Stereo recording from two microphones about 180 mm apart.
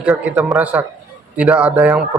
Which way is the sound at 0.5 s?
10° right (ahead or behind).